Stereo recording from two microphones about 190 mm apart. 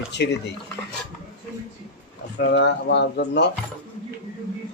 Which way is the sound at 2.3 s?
65° left (ahead or behind).